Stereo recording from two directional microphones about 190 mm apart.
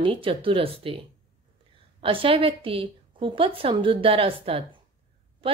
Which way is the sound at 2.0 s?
30° right (ahead or behind).